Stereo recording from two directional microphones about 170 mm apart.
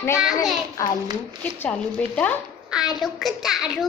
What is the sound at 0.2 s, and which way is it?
Speech, centre (ahead or behind).